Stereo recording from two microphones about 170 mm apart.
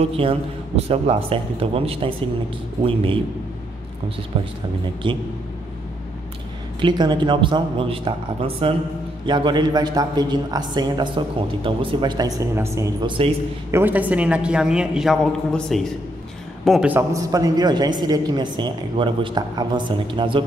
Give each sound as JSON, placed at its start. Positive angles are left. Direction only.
{"t": 0.0, "sound": "a man's voice", "side_deg": -35}
{"t": 6.8, "sound": "speech", "side_deg": -25}
{"t": 13.7, "sound": "a woman's voice", "side_deg": -15}
{"t": 16.9, "sound": "speech", "side_deg": -20}